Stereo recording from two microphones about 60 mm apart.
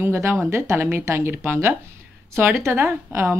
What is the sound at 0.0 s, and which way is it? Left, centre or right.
Speech, right.